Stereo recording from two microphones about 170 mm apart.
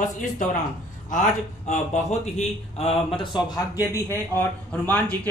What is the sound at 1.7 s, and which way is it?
A man's voice, 40° left (ahead or behind).